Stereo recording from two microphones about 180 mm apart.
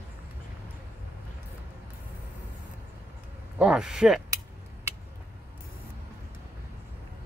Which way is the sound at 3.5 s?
5° right (ahead or behind).